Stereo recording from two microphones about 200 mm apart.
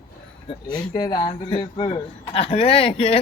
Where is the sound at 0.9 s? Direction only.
20° left (ahead or behind).